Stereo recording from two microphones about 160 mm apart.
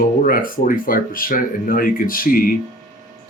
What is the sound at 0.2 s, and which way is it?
Speech, 60° left (ahead or behind).